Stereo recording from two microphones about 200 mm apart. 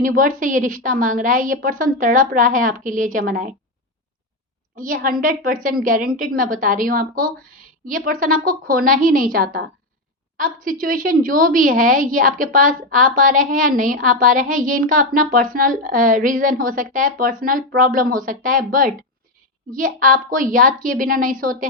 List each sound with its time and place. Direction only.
0.0 s a woman's voice: 45° right (ahead or behind)
4.8 s a woman's voice: 45° right (ahead or behind)